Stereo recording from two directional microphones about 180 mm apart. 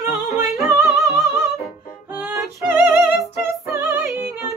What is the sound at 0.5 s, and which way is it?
Singing, 15° right (ahead or behind).